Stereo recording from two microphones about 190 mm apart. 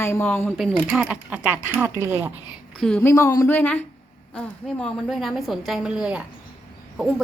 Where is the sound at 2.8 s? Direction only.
5° left (ahead or behind).